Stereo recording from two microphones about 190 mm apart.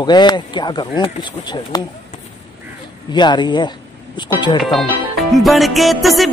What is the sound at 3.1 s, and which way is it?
Speech, 25° left (ahead or behind).